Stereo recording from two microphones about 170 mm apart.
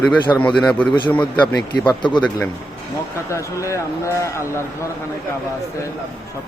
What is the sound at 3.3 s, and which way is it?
Speech, 15° left (ahead or behind).